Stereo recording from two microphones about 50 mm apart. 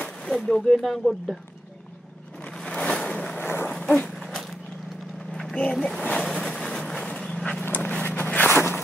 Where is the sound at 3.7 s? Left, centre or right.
Centre.